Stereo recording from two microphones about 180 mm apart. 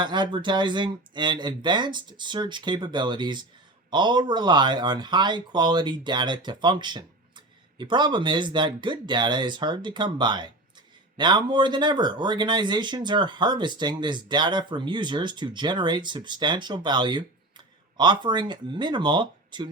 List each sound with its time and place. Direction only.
0.0 s speech: 25° right (ahead or behind)